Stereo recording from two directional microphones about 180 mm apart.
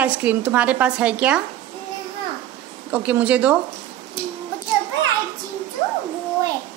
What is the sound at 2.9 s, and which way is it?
Speech, 10° right (ahead or behind).